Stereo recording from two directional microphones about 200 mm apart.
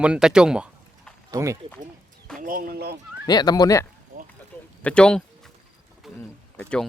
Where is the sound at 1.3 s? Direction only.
15° right (ahead or behind).